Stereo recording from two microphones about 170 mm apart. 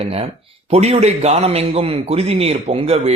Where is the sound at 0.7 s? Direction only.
40° right (ahead or behind).